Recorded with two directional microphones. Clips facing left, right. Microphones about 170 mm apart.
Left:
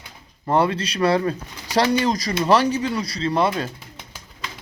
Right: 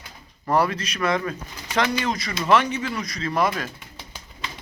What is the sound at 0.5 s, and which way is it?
Speech, 30° left (ahead or behind).